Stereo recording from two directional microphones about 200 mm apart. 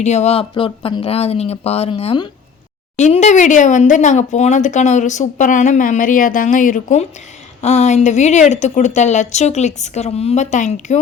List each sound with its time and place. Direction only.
0.0 s speech: 35° left (ahead or behind)